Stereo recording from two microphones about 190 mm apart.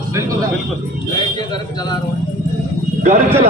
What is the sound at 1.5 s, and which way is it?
Speech, 20° left (ahead or behind).